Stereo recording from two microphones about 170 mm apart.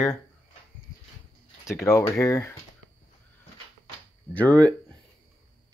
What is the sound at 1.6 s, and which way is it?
Speech, 15° left (ahead or behind).